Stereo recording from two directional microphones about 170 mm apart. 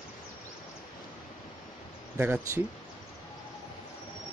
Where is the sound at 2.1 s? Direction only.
10° right (ahead or behind).